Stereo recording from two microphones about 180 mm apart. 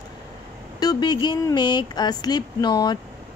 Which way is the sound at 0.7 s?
20° left (ahead or behind).